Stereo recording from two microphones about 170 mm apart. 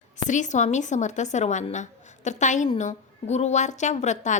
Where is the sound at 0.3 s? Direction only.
45° left (ahead or behind).